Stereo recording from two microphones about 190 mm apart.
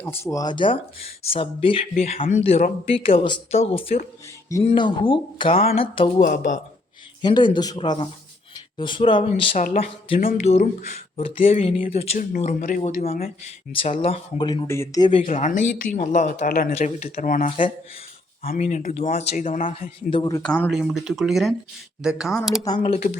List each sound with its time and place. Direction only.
0.0 s speech: 10° left (ahead or behind); by 6.2 s 30° left (ahead or behind)
6.2 s speech: 45° left (ahead or behind)
7.2 s speech: 25° left (ahead or behind)
12.1 s speech: 45° left (ahead or behind)
13.7 s speech: 30° left (ahead or behind)
15.2 s speech: 40° left (ahead or behind)
20.1 s speech: 25° left (ahead or behind)
20.3 s speech: 5° left (ahead or behind)
22.8 s speech: 40° left (ahead or behind)